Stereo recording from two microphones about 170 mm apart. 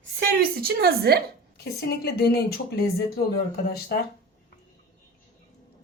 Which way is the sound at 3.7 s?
65° left (ahead or behind).